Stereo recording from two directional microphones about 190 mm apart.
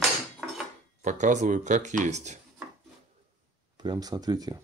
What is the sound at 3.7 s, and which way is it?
Speech, 20° right (ahead or behind).